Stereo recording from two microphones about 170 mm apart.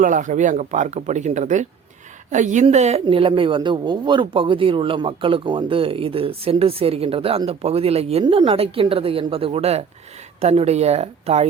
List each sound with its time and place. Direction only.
0.0 s a woman's voice: 50° right (ahead or behind)
8.2 s a woman's voice: 25° right (ahead or behind)